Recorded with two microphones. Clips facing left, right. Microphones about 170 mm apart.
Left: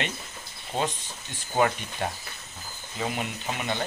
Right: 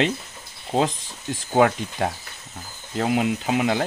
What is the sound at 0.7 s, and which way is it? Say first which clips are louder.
Speech: right 7 dB; 90° right.